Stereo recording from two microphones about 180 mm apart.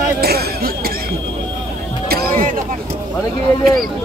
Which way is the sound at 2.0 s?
60° right (ahead or behind).